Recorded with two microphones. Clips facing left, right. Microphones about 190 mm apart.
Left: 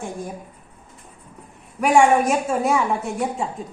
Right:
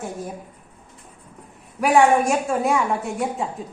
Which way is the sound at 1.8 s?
Centre (ahead or behind).